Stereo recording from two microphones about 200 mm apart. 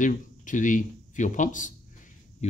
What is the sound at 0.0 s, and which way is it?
Speech, 40° left (ahead or behind).